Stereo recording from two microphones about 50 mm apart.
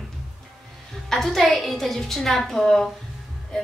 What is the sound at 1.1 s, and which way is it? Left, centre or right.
A woman's voice, centre.